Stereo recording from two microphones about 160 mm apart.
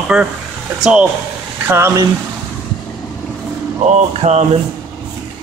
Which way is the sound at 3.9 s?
45° right (ahead or behind).